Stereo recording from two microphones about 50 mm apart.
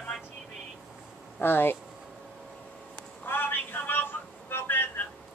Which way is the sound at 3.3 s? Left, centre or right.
Left.